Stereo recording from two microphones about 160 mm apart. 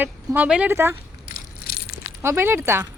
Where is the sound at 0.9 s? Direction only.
75° left (ahead or behind).